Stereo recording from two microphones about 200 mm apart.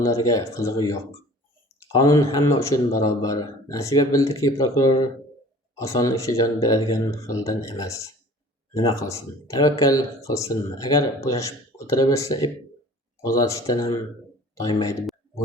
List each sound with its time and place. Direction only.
0.0 s a man's voice: 15° left (ahead or behind)